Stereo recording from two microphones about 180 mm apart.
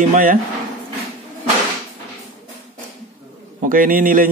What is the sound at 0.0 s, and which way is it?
Speech, 50° right (ahead or behind).